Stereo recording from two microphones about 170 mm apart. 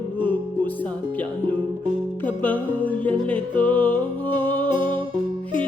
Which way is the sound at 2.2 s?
10° left (ahead or behind).